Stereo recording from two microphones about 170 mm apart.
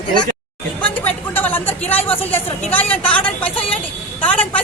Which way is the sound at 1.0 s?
10° left (ahead or behind).